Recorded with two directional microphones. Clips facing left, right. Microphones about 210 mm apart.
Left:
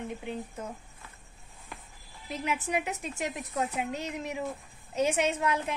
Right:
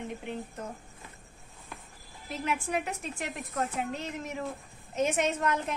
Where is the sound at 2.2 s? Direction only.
15° left (ahead or behind).